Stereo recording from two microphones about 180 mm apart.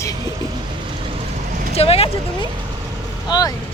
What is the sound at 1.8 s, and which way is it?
Speech, 35° left (ahead or behind).